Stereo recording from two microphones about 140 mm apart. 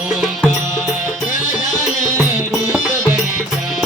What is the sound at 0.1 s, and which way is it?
Music, centre (ahead or behind).